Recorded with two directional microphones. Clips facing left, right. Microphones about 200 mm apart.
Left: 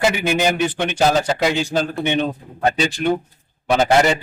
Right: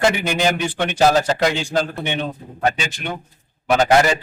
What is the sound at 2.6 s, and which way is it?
Speech, 35° left (ahead or behind).